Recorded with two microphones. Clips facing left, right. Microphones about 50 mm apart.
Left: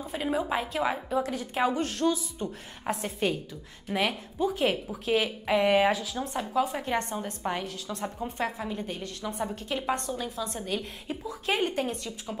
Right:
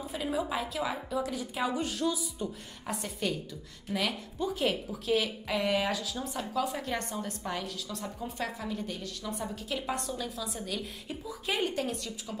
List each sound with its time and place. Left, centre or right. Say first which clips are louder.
0.1 s a woman's voice: left 4 dB; left
1.2 s a woman's voice: left 5 dB; left
2.9 s a woman's voice: left 5 dB; left
6.5 s a woman's voice: left 5 dB; left